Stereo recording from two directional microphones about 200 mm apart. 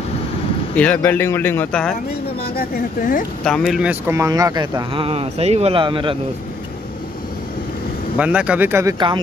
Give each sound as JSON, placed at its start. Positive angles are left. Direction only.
{"t": 0.7, "sound": "speech", "side_deg": 5}
{"t": 2.4, "sound": "speech", "side_deg": 50}
{"t": 3.4, "sound": "speech", "side_deg": 0}
{"t": 8.2, "sound": "speech", "side_deg": -5}